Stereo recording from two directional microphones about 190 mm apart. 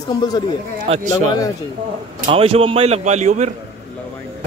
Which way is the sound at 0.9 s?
30° right (ahead or behind).